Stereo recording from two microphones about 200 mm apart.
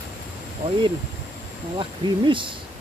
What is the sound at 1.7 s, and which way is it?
Speech, 25° right (ahead or behind).